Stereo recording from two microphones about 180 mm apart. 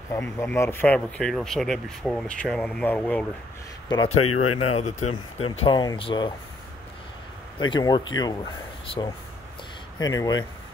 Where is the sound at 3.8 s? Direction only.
25° left (ahead or behind).